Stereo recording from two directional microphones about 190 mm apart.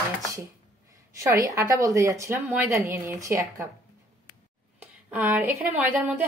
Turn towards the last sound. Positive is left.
turn(degrees=-10)  # may be behind; listen again after turning